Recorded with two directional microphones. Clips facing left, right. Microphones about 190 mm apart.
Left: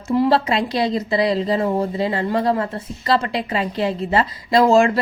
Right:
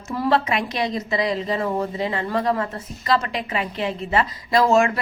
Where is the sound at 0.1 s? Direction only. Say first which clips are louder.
Left 4 dB; 30° left (ahead or behind).